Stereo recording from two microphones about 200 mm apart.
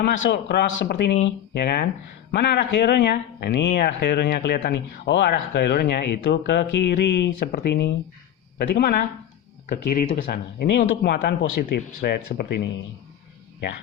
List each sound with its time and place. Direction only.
0.0 s speech: 55° left (ahead or behind)